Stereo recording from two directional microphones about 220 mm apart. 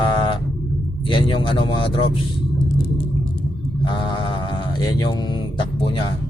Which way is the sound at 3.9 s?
20° left (ahead or behind).